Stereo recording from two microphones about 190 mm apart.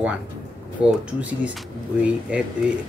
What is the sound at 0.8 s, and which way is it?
Speech, 30° right (ahead or behind).